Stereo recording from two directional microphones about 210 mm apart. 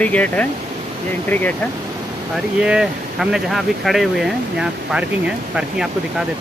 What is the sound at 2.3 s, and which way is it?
Speech, 5° right (ahead or behind).